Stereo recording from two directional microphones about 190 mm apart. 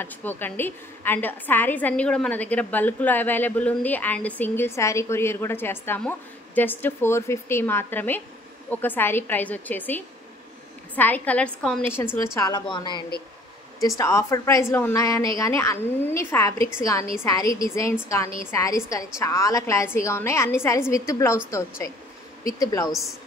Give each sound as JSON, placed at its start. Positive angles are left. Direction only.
{"t": 0.0, "sound": "a woman's voice", "side_deg": 10}